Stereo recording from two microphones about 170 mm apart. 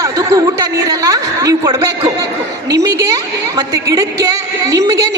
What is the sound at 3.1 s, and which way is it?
A woman's voice, 20° right (ahead or behind).